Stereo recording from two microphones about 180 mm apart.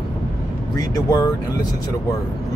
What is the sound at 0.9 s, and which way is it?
Speech, 15° left (ahead or behind).